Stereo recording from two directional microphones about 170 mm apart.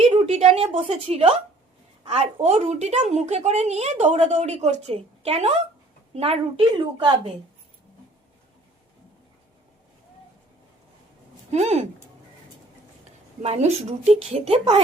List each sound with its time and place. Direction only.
0.1 s a woman's voice: 35° right (ahead or behind)
11.5 s a woman's voice: 40° right (ahead or behind)
13.4 s a woman's voice: 40° right (ahead or behind)